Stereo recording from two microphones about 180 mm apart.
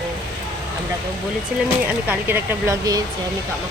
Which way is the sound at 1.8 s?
10° right (ahead or behind).